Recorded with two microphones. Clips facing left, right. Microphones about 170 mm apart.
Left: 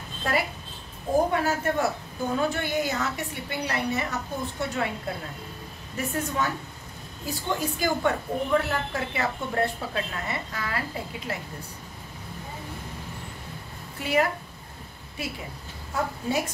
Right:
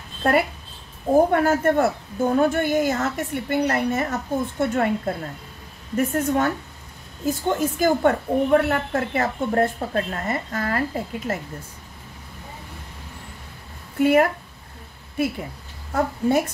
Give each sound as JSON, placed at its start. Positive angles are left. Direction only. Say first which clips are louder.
{"t": 0.2, "sound": "a woman's voice", "louder": "right 7 dB", "side_deg": -55}
{"t": 13.9, "sound": "speech", "louder": "right 8 dB", "side_deg": -55}
{"t": 15.9, "sound": "a woman's voice", "louder": "right 7 dB", "side_deg": -55}